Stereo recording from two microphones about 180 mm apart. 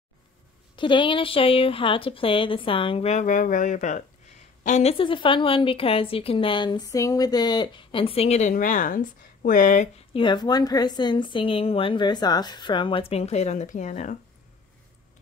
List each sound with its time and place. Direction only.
0.7 s a woman's voice: 25° left (ahead or behind); by 9.8 s 45° left (ahead or behind)
10.1 s a woman's voice: 25° left (ahead or behind); by 14.1 s 45° left (ahead or behind)